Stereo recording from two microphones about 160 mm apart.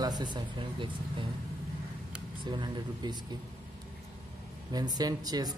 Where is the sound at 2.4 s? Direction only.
30° right (ahead or behind).